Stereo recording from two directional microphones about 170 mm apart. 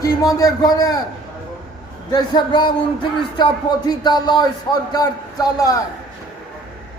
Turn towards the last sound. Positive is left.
turn(degrees=20)  # may be behind; listen again after turning